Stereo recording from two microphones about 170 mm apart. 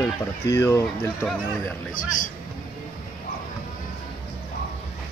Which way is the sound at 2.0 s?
50° left (ahead or behind).